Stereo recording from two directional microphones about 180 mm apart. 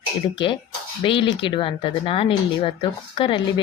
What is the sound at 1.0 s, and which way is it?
Speech, 30° left (ahead or behind).